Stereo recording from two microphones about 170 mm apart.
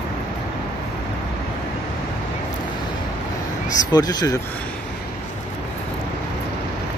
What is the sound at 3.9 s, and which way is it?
Speech, 25° left (ahead or behind).